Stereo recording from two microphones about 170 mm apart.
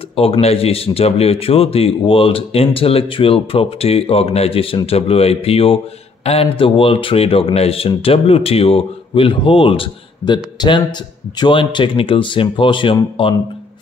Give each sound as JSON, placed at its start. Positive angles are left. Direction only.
{"t": 0.1, "sound": "speech", "side_deg": 35}